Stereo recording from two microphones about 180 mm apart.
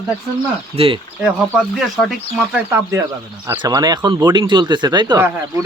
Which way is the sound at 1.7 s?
Centre (ahead or behind).